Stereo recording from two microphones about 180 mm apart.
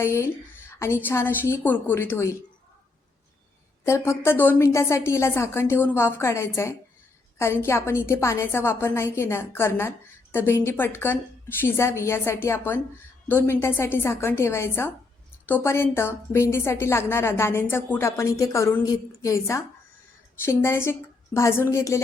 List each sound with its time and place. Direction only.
0.0 s a woman's voice: 15° left (ahead or behind)
3.8 s a woman's voice: 15° left (ahead or behind)